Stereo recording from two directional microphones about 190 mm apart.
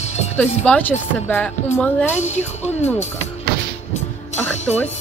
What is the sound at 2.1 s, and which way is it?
Speech, 35° left (ahead or behind).